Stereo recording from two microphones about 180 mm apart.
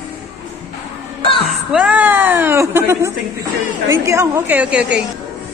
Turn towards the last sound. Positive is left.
turn(degrees=-5)  # may be behind; listen again after turning